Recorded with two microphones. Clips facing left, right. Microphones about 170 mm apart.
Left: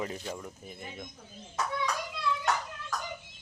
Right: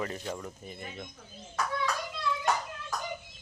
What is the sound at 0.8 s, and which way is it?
Speech, 15° left (ahead or behind).